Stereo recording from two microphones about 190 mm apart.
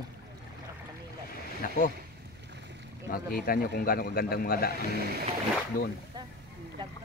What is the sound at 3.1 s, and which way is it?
A man's voice, 50° left (ahead or behind).